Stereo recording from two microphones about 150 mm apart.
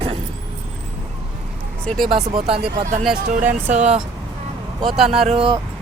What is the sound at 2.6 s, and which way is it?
Speech, 60° right (ahead or behind).